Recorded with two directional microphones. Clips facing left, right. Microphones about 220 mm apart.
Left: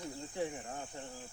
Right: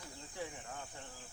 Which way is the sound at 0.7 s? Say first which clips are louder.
Left 5 dB; 35° left (ahead or behind).